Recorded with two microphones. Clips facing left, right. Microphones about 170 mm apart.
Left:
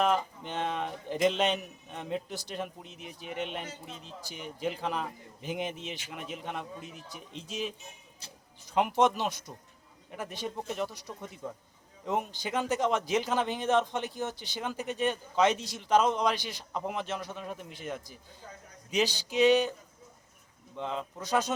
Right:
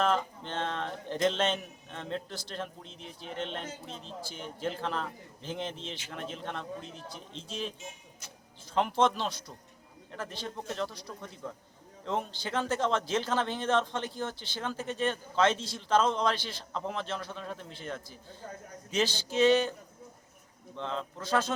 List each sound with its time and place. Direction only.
0.0 s a man's voice: 10° left (ahead or behind)
8.2 s speech: 30° left (ahead or behind)
9.0 s a man's voice: 15° left (ahead or behind)
18.4 s a man's voice: 50° right (ahead or behind)
18.9 s a man's voice: 15° left (ahead or behind)
20.7 s a man's voice: 5° left (ahead or behind)